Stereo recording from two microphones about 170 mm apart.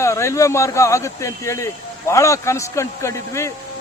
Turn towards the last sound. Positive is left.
turn(degrees=15)  # may be behind; listen again after turning